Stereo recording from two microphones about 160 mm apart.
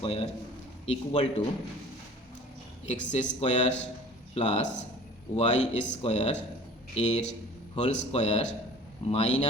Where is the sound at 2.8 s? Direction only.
45° left (ahead or behind).